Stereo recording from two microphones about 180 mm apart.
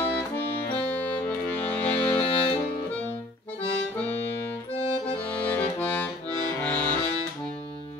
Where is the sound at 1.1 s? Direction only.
10° left (ahead or behind).